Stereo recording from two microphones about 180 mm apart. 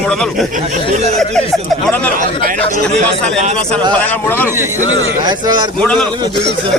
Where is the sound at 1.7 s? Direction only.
5° left (ahead or behind).